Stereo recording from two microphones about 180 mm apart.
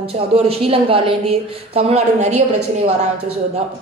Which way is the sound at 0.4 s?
35° right (ahead or behind).